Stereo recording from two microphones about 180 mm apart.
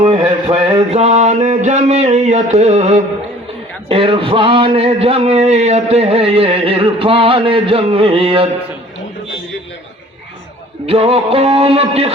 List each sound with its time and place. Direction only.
0.0 s a man's voice: 35° right (ahead or behind)
10.8 s a man's voice: 30° right (ahead or behind)